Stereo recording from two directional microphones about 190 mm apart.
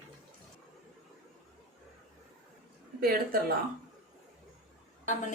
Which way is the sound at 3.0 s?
50° right (ahead or behind).